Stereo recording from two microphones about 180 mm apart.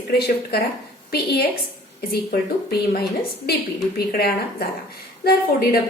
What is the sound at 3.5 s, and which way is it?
A woman's voice, 60° left (ahead or behind).